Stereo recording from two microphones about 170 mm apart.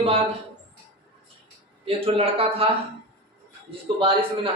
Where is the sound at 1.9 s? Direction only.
35° right (ahead or behind).